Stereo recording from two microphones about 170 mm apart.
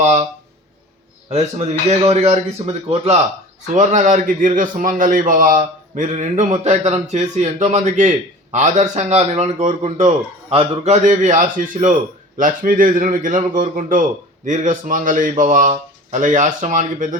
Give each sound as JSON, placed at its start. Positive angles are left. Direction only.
{"t": 0.0, "sound": "a man's voice", "side_deg": -45}
{"t": 1.3, "sound": "a man's voice", "side_deg": -40}